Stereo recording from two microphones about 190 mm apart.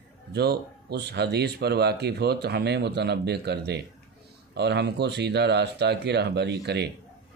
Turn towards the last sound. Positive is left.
turn(degrees=-60)  # may be behind; listen again after turning